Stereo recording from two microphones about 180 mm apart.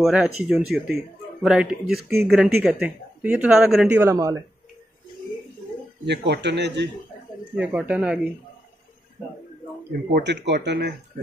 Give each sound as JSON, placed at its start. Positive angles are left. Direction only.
{"t": 0.0, "sound": "speech", "side_deg": -5}
{"t": 6.0, "sound": "speech", "side_deg": -70}
{"t": 7.5, "sound": "speech", "side_deg": -10}
{"t": 9.8, "sound": "speech", "side_deg": -70}